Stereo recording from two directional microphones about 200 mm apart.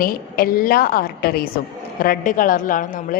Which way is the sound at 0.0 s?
45° left (ahead or behind).